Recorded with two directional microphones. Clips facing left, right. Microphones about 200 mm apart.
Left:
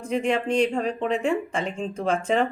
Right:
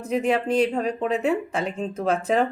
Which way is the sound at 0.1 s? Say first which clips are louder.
Right 1 dB; 5° right (ahead or behind).